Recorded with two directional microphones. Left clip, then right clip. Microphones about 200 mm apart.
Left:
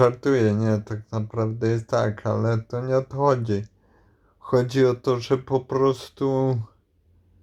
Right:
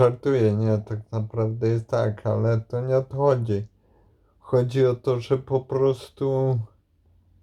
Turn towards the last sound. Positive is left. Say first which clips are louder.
# left 1 dB
turn(degrees=15)  # may be behind; listen again after turning